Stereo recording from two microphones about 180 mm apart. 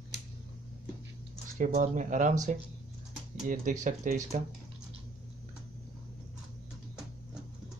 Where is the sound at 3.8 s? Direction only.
45° right (ahead or behind).